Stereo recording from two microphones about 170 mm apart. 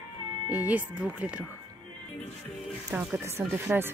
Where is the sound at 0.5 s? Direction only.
10° right (ahead or behind).